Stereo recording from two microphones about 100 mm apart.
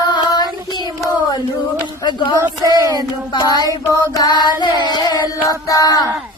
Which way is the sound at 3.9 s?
40° left (ahead or behind).